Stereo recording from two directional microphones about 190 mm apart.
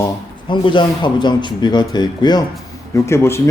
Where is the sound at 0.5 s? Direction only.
25° left (ahead or behind).